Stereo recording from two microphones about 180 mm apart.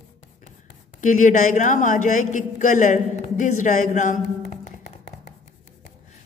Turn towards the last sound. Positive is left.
turn(degrees=45)  # may be behind; listen again after turning